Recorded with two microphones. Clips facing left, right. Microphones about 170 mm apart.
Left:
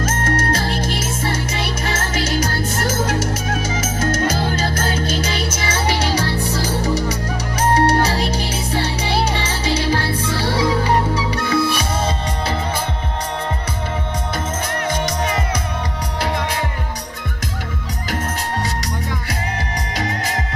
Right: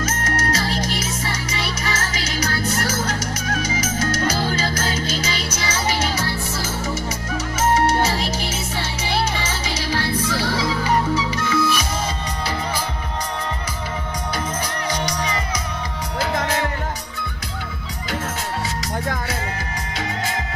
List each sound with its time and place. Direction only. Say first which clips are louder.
0.0 s music: left 3 dB; 50° left (ahead or behind)
5.9 s music: left 4 dB; 35° left (ahead or behind)
14.9 s music: left 3 dB; 50° left (ahead or behind)